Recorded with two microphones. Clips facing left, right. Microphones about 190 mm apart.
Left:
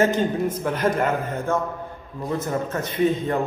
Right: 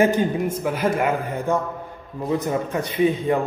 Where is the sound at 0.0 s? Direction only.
10° right (ahead or behind).